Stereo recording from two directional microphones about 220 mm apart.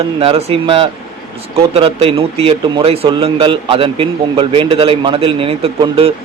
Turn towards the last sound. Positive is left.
turn(degrees=-25)  # may be behind; listen again after turning